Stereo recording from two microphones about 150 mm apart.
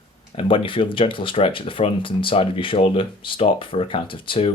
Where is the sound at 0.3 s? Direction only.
35° left (ahead or behind).